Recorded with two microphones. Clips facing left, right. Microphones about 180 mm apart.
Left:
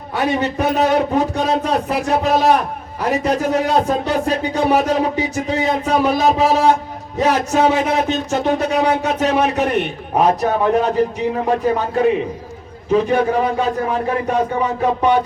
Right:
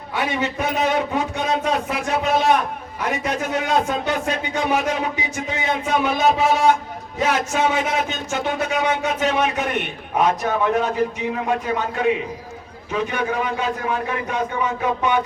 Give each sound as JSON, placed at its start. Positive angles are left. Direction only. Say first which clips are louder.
{"t": 0.1, "sound": "speech", "louder": "left 5 dB", "side_deg": 40}